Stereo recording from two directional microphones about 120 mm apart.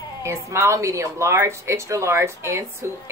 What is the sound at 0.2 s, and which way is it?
A woman's voice, 25° right (ahead or behind).